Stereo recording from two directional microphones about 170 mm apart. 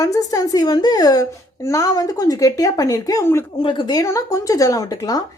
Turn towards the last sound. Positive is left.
turn(degrees=20)  # may be behind; listen again after turning